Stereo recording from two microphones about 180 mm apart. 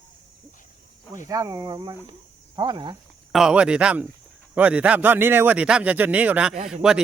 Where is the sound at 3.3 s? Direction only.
5° right (ahead or behind).